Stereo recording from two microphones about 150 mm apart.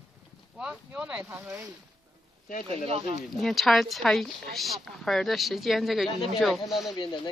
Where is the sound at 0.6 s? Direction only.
5° right (ahead or behind).